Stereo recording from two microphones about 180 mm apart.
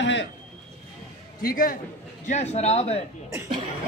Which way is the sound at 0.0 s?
90° left.